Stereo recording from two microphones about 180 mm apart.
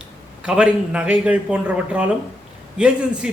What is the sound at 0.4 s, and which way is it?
A man's voice, 5° right (ahead or behind).